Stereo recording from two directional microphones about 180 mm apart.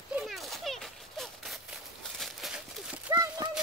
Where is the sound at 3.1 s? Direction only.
20° right (ahead or behind).